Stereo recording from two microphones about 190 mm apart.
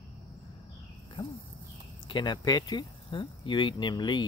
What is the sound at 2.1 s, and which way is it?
Speech, 20° left (ahead or behind).